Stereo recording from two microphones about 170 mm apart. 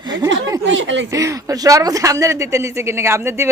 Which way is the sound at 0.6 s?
90° right.